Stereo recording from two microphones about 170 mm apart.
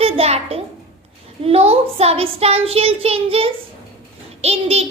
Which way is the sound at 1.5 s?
35° right (ahead or behind).